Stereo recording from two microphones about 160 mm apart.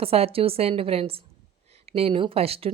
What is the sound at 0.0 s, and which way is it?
Speech, 35° right (ahead or behind).